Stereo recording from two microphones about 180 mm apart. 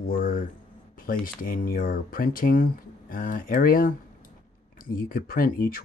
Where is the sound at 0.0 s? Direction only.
55° left (ahead or behind).